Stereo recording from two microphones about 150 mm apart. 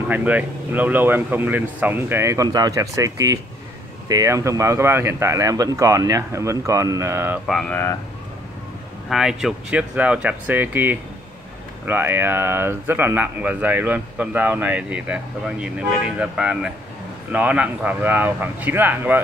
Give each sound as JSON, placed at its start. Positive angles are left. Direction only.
{"t": 0.1, "sound": "speech", "side_deg": -10}
{"t": 7.4, "sound": "speech", "side_deg": 5}
{"t": 9.1, "sound": "speech", "side_deg": -5}